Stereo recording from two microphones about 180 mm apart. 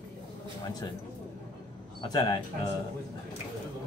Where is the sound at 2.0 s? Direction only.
25° left (ahead or behind).